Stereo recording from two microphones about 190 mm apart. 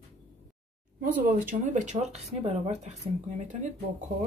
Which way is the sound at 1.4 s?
40° right (ahead or behind).